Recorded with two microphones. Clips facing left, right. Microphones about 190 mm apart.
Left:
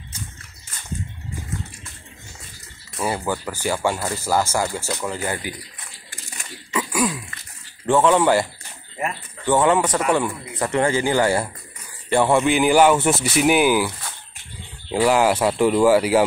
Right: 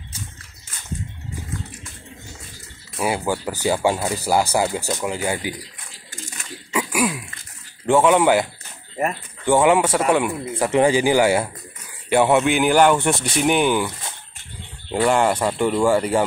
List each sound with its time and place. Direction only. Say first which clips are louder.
3.0 s speech: right 2 dB; 10° right (ahead or behind)
3.4 s speech: right 4 dB; 20° right (ahead or behind)
6.7 s throat clearing: right 1 dB; 10° right (ahead or behind)
7.8 s speech: right 1 dB; 10° right (ahead or behind)
9.5 s speech: right 2 dB; 10° right (ahead or behind)